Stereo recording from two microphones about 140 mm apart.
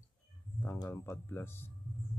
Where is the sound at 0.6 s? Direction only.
15° left (ahead or behind).